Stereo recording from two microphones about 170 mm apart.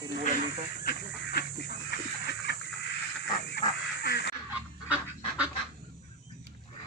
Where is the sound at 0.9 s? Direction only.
70° left (ahead or behind).